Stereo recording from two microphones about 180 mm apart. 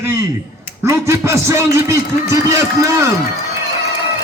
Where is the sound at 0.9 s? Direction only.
15° right (ahead or behind).